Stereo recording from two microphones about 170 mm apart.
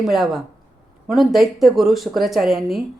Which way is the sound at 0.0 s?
Centre (ahead or behind).